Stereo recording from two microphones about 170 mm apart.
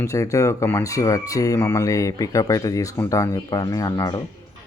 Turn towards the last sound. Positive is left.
turn(degrees=20)  # may be behind; listen again after turning